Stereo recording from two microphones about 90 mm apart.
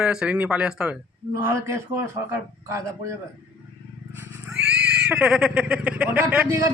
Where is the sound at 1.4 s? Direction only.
35° right (ahead or behind).